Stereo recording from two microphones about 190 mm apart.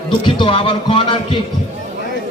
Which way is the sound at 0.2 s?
25° left (ahead or behind).